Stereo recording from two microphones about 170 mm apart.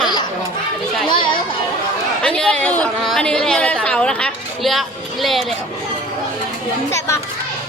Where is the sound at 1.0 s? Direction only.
30° left (ahead or behind).